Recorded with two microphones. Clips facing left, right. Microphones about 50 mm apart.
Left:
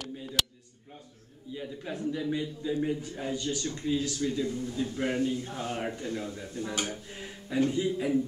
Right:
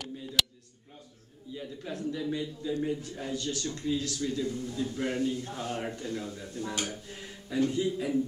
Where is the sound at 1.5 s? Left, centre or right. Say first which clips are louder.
Left 1 dB; centre.